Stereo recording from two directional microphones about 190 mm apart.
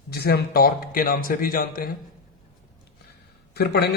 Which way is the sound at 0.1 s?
55° left (ahead or behind).